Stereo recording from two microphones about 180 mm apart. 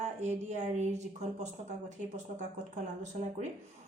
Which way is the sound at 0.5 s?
40° right (ahead or behind).